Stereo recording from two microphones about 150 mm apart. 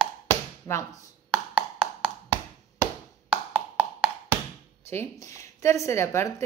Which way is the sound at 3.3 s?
40° right (ahead or behind).